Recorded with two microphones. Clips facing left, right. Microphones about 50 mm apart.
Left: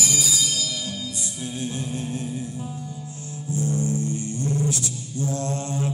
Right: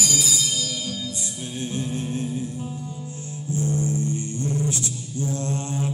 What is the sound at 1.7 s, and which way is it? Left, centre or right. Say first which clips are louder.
Music: right 2 dB; right.